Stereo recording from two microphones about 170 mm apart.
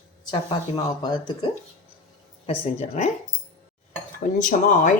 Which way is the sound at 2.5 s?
40° left (ahead or behind).